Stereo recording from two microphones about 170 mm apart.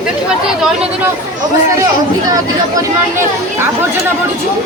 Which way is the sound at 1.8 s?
20° right (ahead or behind).